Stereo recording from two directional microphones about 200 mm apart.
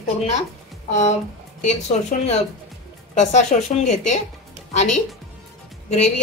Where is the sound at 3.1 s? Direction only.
35° left (ahead or behind).